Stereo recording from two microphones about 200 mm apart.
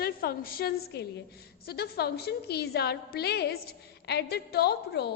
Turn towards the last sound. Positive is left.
turn(degrees=55)  # may be behind; listen again after turning